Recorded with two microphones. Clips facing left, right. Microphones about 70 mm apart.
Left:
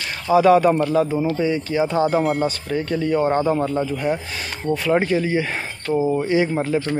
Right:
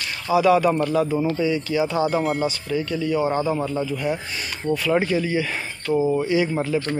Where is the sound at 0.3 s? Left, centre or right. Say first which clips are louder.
Left 3 dB; left.